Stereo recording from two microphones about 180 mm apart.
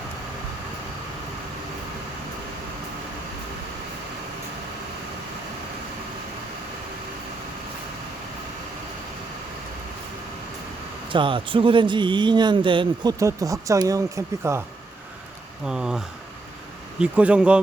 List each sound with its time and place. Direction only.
11.1 s speech: 30° right (ahead or behind)
15.6 s speech: 5° right (ahead or behind)